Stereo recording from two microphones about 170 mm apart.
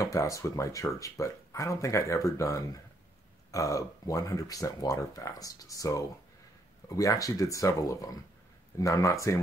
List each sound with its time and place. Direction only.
0.0 s speech: 20° left (ahead or behind)